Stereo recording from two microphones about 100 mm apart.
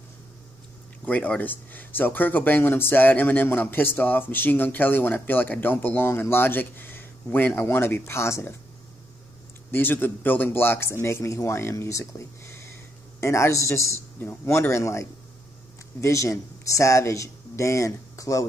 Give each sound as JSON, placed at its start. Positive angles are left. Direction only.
{"t": 1.0, "sound": "speech", "side_deg": 15}
{"t": 9.7, "sound": "speech", "side_deg": 20}